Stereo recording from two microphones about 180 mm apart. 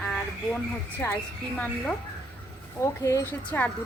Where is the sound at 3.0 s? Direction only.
15° left (ahead or behind).